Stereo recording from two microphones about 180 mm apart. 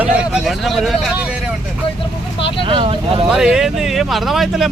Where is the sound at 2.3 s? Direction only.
30° left (ahead or behind).